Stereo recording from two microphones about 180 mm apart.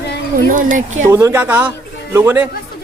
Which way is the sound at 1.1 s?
15° right (ahead or behind).